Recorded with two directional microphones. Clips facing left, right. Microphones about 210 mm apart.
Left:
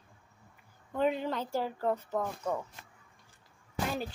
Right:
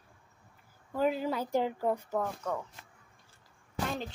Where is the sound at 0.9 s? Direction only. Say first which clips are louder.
Even; 5° right (ahead or behind).